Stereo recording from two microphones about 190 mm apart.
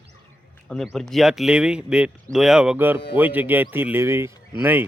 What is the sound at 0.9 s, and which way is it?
A man's voice, centre (ahead or behind).